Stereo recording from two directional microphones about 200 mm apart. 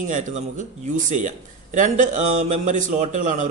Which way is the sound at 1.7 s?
40° right (ahead or behind).